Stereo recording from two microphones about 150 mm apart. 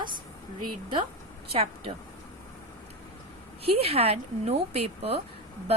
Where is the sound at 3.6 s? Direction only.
40° right (ahead or behind).